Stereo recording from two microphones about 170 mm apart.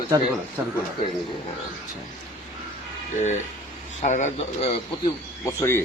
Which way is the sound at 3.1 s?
45° left (ahead or behind).